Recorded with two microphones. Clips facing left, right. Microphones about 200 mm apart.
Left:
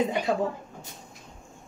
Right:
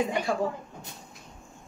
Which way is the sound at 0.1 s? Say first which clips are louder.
Left 2 dB; 20° left (ahead or behind).